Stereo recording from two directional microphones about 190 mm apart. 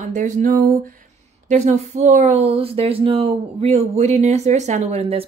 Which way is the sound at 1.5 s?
35° right (ahead or behind).